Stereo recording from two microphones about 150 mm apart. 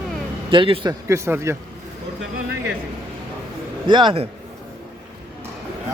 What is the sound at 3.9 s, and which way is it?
Speech, 30° right (ahead or behind).